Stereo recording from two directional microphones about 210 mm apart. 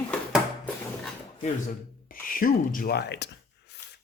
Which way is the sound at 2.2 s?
40° left (ahead or behind).